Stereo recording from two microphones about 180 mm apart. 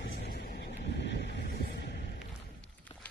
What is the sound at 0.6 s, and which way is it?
Hum, 70° left (ahead or behind).